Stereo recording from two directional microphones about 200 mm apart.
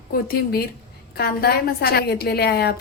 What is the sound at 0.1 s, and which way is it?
A woman's voice, 50° left (ahead or behind).